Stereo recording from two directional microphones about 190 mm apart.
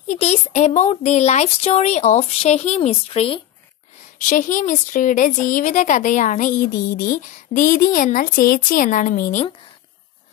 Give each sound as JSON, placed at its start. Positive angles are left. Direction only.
{"t": 0.0, "sound": "speech", "side_deg": 35}
{"t": 4.3, "sound": "speech", "side_deg": 45}